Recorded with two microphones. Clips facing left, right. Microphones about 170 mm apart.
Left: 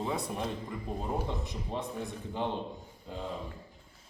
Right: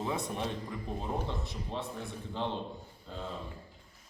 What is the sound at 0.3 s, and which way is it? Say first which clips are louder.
A man's voice: left 1 dB; centre (ahead or behind).